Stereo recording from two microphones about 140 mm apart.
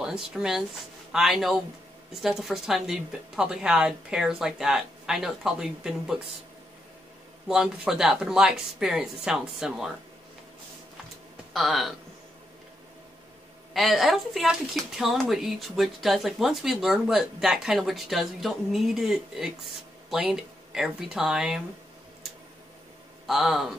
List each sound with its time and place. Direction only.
0.0 s speech: 5° right (ahead or behind)
7.4 s speech: 5° right (ahead or behind)
11.5 s speech: centre (ahead or behind)
13.7 s speech: centre (ahead or behind)
23.2 s speech: centre (ahead or behind)